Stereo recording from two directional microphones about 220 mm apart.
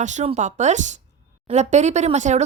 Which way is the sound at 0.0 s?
30° right (ahead or behind).